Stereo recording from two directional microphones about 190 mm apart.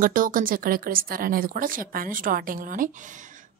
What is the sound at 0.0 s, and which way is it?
Speech, 45° right (ahead or behind).